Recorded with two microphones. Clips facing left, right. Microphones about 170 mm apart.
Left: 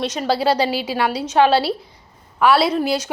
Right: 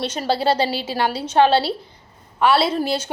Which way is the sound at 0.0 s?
30° right (ahead or behind).